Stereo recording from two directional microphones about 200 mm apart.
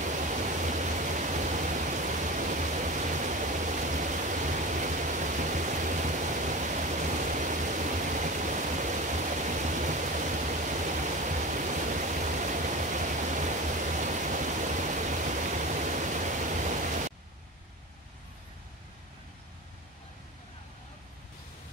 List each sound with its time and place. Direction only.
0.0 s pink noise: 40° right (ahead or behind)